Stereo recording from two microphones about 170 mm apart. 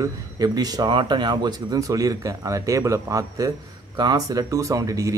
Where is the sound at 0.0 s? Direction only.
20° right (ahead or behind).